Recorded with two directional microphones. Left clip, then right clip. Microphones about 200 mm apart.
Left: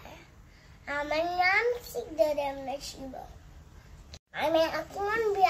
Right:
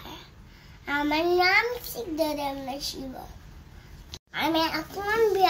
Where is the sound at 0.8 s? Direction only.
15° left (ahead or behind).